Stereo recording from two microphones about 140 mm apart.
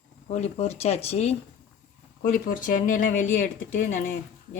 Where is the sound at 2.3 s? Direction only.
70° left (ahead or behind).